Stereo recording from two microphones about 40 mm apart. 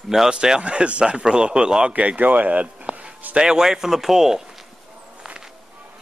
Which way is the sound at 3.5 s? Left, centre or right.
Centre.